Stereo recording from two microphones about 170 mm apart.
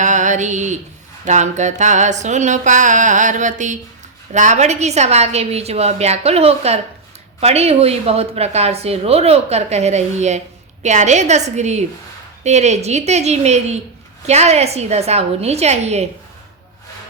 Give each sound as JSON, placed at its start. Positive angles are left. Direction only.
{"t": 0.0, "sound": "mantra", "side_deg": -45}
{"t": 1.2, "sound": "a sound", "side_deg": -45}
{"t": 4.3, "sound": "speech", "side_deg": -45}